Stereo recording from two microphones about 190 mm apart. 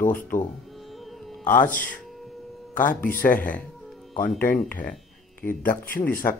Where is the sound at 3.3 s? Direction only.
10° left (ahead or behind).